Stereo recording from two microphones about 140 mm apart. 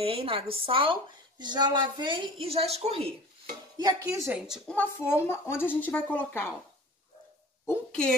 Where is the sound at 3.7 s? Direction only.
25° right (ahead or behind).